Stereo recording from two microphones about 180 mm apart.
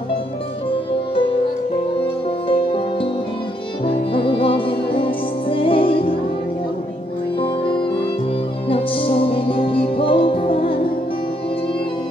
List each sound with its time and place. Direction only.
2.4 s music: 30° left (ahead or behind)
8.6 s music: 30° left (ahead or behind)